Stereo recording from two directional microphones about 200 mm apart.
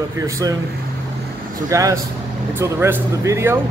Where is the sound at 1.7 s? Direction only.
15° right (ahead or behind).